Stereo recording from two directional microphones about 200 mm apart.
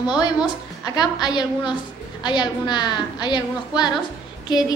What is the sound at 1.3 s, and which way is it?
A woman's voice, 20° left (ahead or behind).